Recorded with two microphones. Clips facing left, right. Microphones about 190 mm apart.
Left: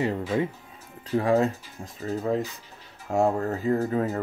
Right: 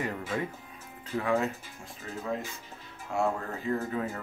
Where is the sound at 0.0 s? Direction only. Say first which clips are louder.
Left 7 dB; 25° left (ahead or behind).